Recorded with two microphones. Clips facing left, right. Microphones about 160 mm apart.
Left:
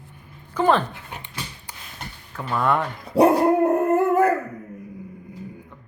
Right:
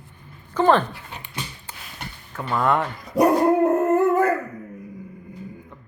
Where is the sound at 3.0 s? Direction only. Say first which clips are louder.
Left 2 dB; 30° left (ahead or behind).